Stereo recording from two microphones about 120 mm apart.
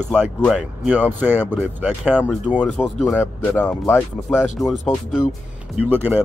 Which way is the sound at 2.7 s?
5° right (ahead or behind).